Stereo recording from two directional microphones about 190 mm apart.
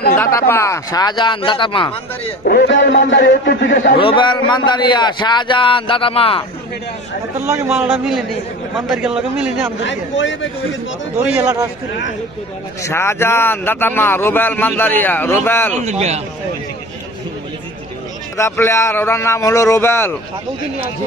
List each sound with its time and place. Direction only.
0.2 s a man's voice: 15° left (ahead or behind)
2.4 s a man's voice: 60° left (ahead or behind)
4.0 s a man's voice: 25° left (ahead or behind)
7.3 s a man's voice: 10° right (ahead or behind)
9.8 s a man's voice: 75° left (ahead or behind)
11.1 s a man's voice: 5° right (ahead or behind)
12.8 s speech: 15° left (ahead or behind)
15.7 s speech: 35° right (ahead or behind)
18.4 s speech: 15° left (ahead or behind)